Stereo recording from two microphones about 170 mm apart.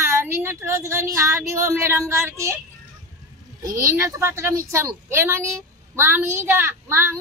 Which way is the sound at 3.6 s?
15° right (ahead or behind).